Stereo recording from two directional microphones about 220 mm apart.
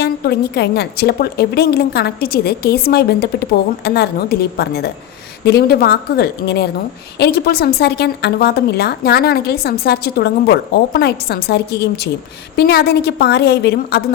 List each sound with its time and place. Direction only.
0.0 s a woman's voice: 50° left (ahead or behind)